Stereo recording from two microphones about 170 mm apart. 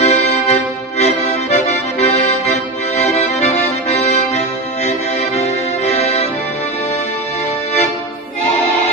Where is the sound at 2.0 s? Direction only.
40° left (ahead or behind).